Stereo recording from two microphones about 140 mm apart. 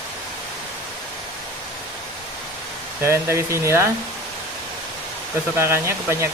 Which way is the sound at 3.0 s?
20° right (ahead or behind).